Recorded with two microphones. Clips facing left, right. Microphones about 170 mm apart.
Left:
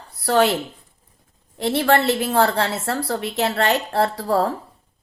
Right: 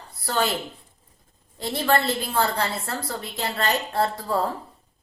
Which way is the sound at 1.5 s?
70° left (ahead or behind).